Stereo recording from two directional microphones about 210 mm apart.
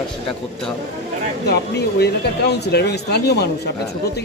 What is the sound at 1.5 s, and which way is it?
Speech, 50° left (ahead or behind).